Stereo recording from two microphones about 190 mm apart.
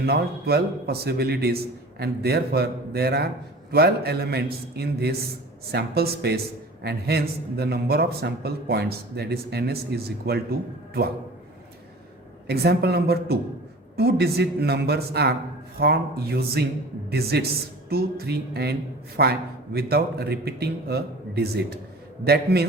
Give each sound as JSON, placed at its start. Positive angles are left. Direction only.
{"t": 0.0, "sound": "a man's voice", "side_deg": -55}
{"t": 12.5, "sound": "a man's voice", "side_deg": -60}